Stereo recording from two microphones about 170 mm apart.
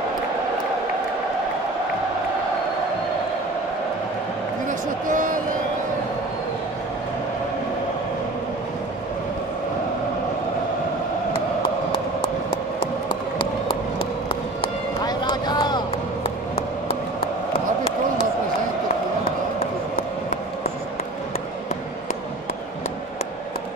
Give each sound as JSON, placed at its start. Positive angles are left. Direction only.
{"t": 4.6, "sound": "a sound", "side_deg": -50}
{"t": 13.9, "sound": "run", "side_deg": 30}
{"t": 19.6, "sound": "basketball bounce", "side_deg": 60}